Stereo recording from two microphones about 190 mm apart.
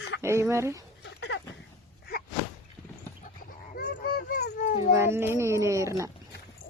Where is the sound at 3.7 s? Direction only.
55° left (ahead or behind).